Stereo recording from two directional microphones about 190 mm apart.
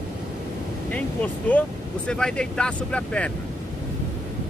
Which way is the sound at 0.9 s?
10° left (ahead or behind).